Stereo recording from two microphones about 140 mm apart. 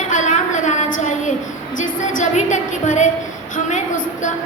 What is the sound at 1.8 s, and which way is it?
A woman's voice, 60° left (ahead or behind).